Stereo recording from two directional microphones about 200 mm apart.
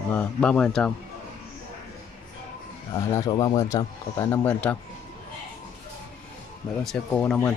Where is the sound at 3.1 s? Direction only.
20° left (ahead or behind).